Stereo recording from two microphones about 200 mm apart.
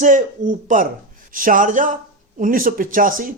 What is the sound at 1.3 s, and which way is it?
Speech, 45° right (ahead or behind).